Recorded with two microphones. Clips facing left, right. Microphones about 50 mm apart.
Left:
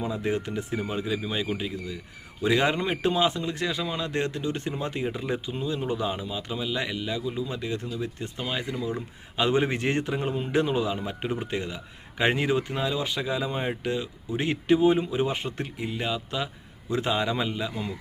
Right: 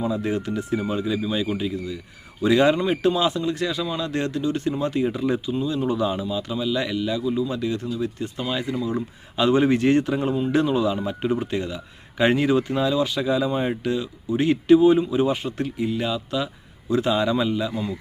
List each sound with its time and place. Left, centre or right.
0.0 s speech: left
8.7 s speech: right
9.3 s speech: left